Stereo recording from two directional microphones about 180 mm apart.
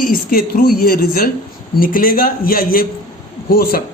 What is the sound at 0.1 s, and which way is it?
Speech, 55° left (ahead or behind).